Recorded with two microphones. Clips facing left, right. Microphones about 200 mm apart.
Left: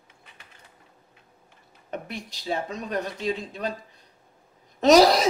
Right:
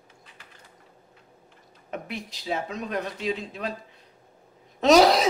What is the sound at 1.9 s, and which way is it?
Speech, centre (ahead or behind).